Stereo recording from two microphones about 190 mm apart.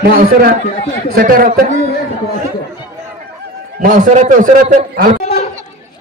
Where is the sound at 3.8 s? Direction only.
45° right (ahead or behind).